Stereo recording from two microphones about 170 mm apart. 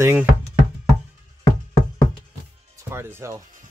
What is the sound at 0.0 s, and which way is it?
Speech, 15° right (ahead or behind).